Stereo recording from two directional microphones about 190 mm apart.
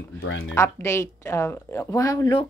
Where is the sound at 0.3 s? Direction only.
90° left.